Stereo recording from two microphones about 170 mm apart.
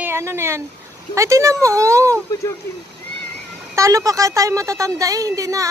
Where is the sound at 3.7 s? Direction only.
20° right (ahead or behind).